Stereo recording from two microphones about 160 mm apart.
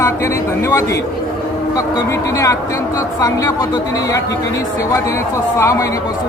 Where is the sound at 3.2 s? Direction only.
25° left (ahead or behind).